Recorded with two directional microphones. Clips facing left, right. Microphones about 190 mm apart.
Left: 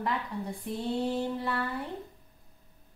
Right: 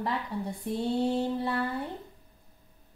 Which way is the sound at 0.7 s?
30° right (ahead or behind).